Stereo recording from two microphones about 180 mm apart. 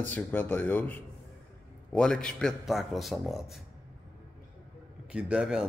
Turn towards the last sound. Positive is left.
turn(degrees=-5)  # may be behind; listen again after turning